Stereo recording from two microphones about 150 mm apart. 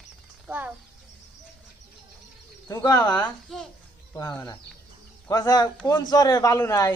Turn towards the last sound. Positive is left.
turn(degrees=25)  # may be behind; listen again after turning